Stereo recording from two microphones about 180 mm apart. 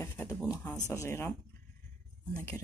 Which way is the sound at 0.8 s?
15° left (ahead or behind).